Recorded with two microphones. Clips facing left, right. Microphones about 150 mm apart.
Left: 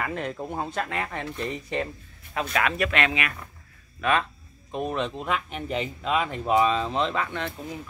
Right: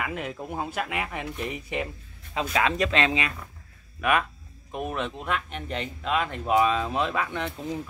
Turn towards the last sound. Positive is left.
turn(degrees=-15)  # may be behind; listen again after turning